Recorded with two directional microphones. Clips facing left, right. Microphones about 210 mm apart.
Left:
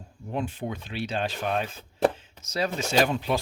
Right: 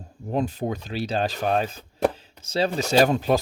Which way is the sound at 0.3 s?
40° right (ahead or behind).